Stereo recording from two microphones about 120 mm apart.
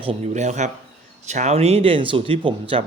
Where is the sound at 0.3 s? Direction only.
80° right.